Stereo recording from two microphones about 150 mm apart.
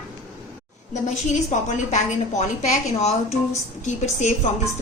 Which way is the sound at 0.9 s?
50° left (ahead or behind).